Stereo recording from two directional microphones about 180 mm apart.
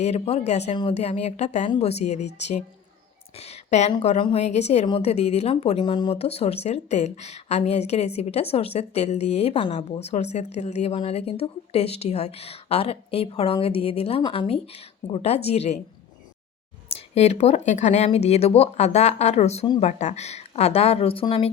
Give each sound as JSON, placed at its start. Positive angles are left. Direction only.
{"t": 0.0, "sound": "a woman's voice", "side_deg": 35}
{"t": 16.9, "sound": "speech", "side_deg": 40}